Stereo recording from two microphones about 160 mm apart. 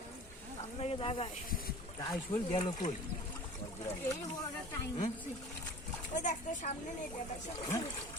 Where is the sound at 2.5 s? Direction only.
40° left (ahead or behind).